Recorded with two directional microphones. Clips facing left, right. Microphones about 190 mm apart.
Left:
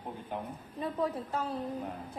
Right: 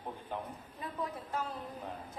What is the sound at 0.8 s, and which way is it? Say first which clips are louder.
Speech: left 7 dB; 30° left (ahead or behind).